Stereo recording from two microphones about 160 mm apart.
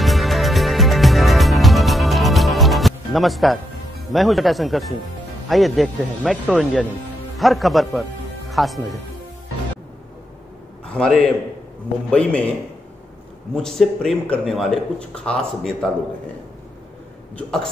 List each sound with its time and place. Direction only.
0.0 s music: centre (ahead or behind)
4.1 s a man's voice: centre (ahead or behind)
10.9 s a man's voice: 5° left (ahead or behind)
13.6 s a man's voice: 5° left (ahead or behind)
17.4 s a man's voice: 5° left (ahead or behind)